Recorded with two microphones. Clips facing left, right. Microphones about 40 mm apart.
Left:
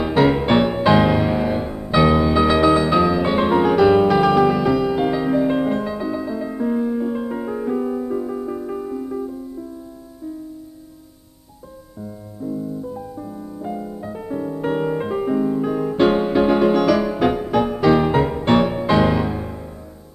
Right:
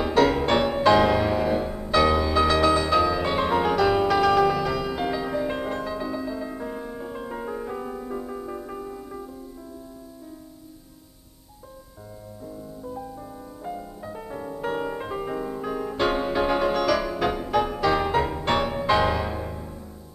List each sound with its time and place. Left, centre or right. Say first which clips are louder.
0.0 s music: left 3 dB; centre
12.0 s music: left 10 dB; centre
15.2 s music: left 9 dB; centre